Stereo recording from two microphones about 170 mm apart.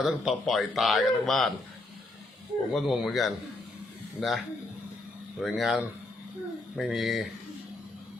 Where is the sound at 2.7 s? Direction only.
Centre (ahead or behind).